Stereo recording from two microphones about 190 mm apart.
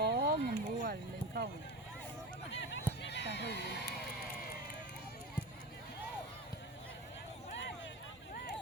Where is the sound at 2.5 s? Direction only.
70° left (ahead or behind).